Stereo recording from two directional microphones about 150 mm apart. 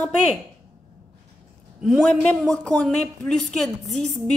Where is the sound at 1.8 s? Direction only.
Centre (ahead or behind).